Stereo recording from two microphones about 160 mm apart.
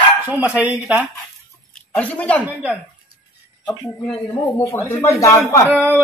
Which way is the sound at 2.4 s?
10° right (ahead or behind).